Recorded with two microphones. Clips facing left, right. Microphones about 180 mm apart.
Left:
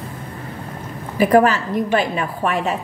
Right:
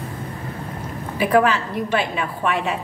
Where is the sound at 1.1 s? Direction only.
40° left (ahead or behind).